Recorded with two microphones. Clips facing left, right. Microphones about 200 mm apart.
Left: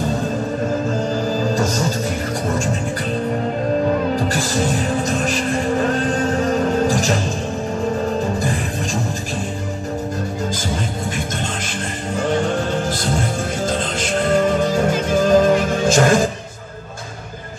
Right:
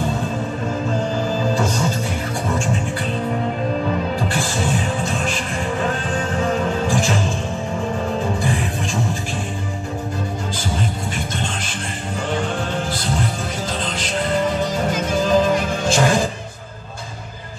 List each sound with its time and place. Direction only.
1.5 s music: 40° left (ahead or behind)
4.3 s music: 40° left (ahead or behind)
12.2 s vehicle: 45° left (ahead or behind)
13.7 s music: 45° left (ahead or behind)